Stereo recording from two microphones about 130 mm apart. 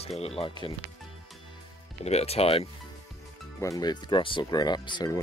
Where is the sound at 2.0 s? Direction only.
55° left (ahead or behind).